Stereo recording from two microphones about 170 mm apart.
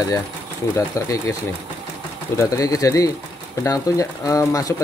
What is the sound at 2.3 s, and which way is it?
Speech, 20° left (ahead or behind).